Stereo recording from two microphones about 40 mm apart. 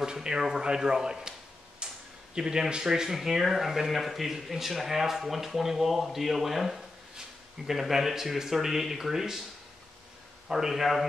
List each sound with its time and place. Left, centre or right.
0.0 s speech: centre
1.8 s a sound: right
2.3 s speech: centre
10.5 s speech: centre